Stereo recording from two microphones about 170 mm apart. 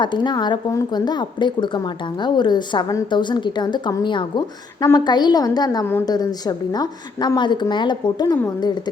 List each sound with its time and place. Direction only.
0.0 s speech: 25° left (ahead or behind)